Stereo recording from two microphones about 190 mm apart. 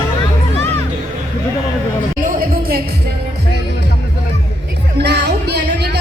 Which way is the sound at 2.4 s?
50° right (ahead or behind).